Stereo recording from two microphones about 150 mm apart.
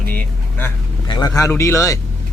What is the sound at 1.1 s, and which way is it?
Speech, 25° left (ahead or behind).